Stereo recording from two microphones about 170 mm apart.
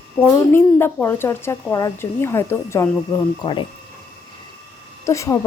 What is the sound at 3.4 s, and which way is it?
Speech, 30° left (ahead or behind).